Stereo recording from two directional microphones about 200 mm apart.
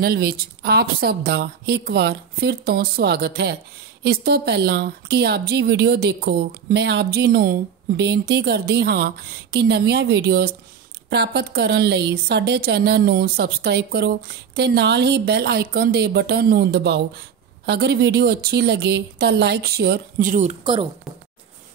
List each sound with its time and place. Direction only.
0.0 s speech: 50° right (ahead or behind)